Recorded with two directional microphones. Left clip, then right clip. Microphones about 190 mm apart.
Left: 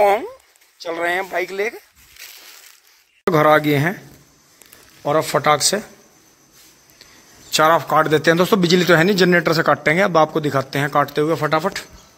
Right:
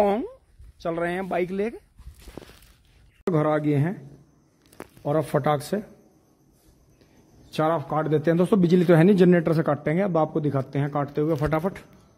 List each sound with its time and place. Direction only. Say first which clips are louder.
0.0 s speech: left 7 dB; 20° left (ahead or behind)
0.8 s speech: left 6 dB; 30° left (ahead or behind)
3.3 s a man's voice: left 9 dB; 5° left (ahead or behind)
5.2 s speech: left 10 dB; 10° right (ahead or behind)
7.5 s a man's voice: left 10 dB; centre (ahead or behind)